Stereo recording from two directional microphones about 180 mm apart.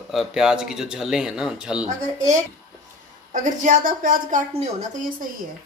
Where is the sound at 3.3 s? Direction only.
45° right (ahead or behind).